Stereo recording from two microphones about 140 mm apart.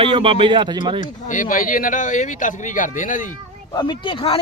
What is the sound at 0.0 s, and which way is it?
Speech, 40° right (ahead or behind).